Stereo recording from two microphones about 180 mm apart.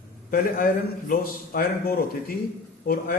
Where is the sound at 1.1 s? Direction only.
55° left (ahead or behind).